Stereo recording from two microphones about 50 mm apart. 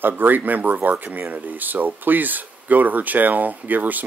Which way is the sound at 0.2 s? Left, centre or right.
Right.